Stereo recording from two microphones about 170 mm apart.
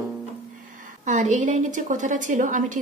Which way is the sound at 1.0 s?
45° right (ahead or behind).